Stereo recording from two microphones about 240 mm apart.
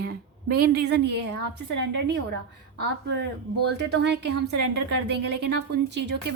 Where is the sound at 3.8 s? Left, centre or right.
Right.